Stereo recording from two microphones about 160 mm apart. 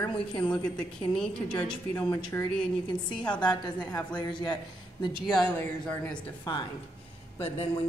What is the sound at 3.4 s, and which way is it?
A woman's voice, 25° left (ahead or behind).